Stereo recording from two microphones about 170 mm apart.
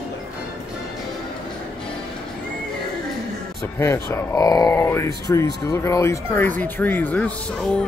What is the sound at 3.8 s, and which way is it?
A man's voice, 15° left (ahead or behind).